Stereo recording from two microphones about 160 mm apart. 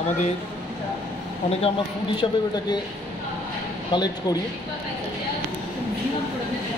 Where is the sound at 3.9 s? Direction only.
25° left (ahead or behind).